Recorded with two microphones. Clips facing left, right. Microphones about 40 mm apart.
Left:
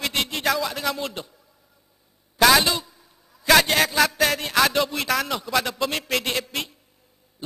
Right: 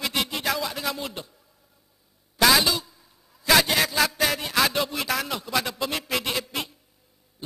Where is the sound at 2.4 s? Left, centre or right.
Centre.